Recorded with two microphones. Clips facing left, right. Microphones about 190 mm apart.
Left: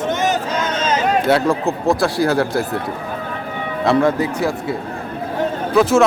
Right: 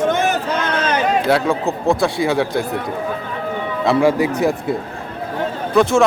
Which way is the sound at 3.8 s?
5° right (ahead or behind).